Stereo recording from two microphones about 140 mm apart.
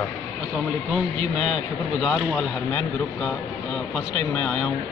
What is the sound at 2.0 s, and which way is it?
Speech, 5° left (ahead or behind).